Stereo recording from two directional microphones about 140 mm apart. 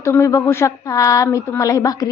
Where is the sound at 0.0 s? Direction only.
20° left (ahead or behind).